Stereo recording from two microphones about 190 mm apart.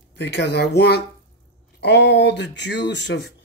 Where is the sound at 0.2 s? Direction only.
65° left (ahead or behind).